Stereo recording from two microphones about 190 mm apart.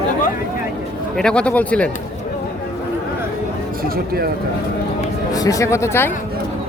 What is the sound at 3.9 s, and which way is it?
Speech, 50° right (ahead or behind).